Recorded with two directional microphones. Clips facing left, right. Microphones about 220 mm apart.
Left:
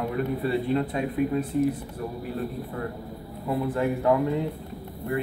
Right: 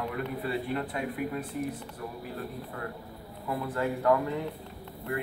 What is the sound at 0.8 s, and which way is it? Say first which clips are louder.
Speech: left 7 dB; 25° left (ahead or behind).